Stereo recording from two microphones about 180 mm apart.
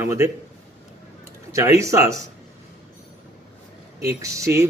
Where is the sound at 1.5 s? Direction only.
15° right (ahead or behind).